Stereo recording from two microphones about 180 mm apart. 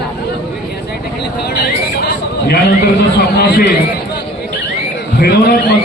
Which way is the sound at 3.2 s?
65° left (ahead or behind).